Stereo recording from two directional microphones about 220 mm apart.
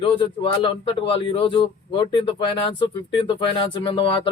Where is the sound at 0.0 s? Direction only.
25° left (ahead or behind).